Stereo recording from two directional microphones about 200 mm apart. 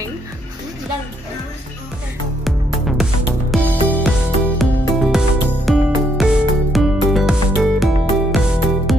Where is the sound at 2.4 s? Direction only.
Centre (ahead or behind).